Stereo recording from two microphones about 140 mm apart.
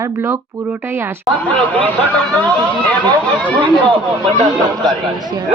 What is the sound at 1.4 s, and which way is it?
Speech, 10° left (ahead or behind).